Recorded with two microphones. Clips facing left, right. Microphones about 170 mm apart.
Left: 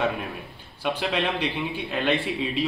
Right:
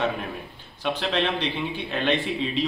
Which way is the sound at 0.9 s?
10° left (ahead or behind).